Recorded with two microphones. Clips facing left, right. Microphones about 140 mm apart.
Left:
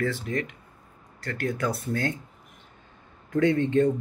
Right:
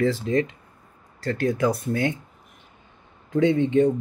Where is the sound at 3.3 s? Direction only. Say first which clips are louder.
Right 3 dB; 15° right (ahead or behind).